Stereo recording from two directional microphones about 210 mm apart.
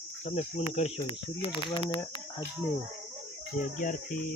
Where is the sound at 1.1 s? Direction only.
25° left (ahead or behind).